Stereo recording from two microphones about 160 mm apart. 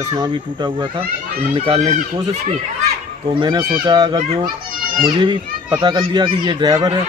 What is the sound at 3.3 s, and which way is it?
A child's voice, 30° right (ahead or behind).